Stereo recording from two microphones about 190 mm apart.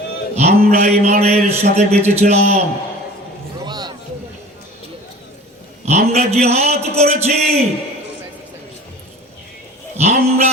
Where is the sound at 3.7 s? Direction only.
20° right (ahead or behind).